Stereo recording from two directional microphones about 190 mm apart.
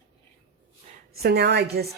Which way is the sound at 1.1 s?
55° right (ahead or behind).